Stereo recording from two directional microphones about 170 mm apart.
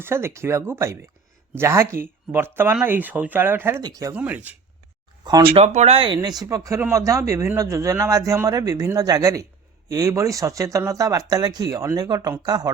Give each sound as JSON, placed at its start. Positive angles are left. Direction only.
{"t": 0.0, "sound": "speech", "side_deg": -15}
{"t": 4.1, "sound": "speech", "side_deg": -10}
{"t": 5.2, "sound": "speech", "side_deg": -25}
{"t": 5.5, "sound": "speech", "side_deg": -40}
{"t": 6.1, "sound": "speech", "side_deg": -25}